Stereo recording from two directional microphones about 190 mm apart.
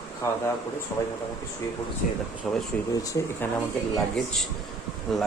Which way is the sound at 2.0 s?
45° left (ahead or behind).